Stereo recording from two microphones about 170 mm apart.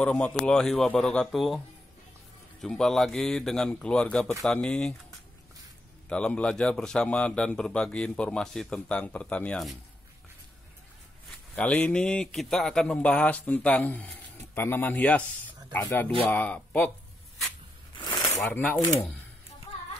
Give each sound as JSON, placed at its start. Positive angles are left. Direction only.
{"t": 0.0, "sound": "a man's voice", "side_deg": 5}
{"t": 2.6, "sound": "a man's voice", "side_deg": 5}
{"t": 6.0, "sound": "a man's voice", "side_deg": 5}
{"t": 11.2, "sound": "a man's voice", "side_deg": 5}
{"t": 17.9, "sound": "a sound", "side_deg": 25}